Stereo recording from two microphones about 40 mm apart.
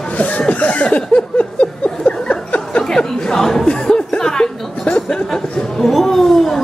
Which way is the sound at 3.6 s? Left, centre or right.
Left.